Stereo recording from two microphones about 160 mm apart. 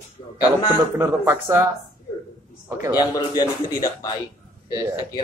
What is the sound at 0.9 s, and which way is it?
Speech, 15° right (ahead or behind).